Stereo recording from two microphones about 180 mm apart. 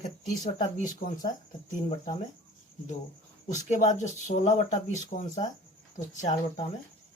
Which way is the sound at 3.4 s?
40° left (ahead or behind).